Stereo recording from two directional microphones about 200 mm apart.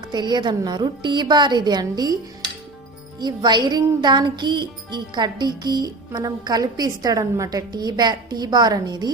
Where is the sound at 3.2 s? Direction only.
20° right (ahead or behind).